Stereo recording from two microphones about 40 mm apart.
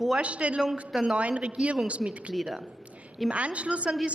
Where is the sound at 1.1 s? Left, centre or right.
Right.